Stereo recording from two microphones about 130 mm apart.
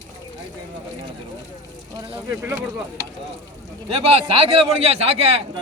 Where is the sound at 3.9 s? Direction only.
50° right (ahead or behind).